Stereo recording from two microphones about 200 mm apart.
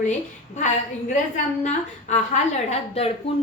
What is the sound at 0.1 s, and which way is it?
A woman's voice, 35° left (ahead or behind).